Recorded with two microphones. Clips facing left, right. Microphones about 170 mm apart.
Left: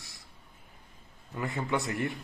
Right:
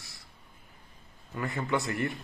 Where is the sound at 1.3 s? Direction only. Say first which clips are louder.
Right 1 dB; 15° left (ahead or behind).